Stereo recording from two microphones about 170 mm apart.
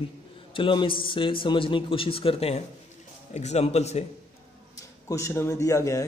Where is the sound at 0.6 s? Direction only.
30° left (ahead or behind).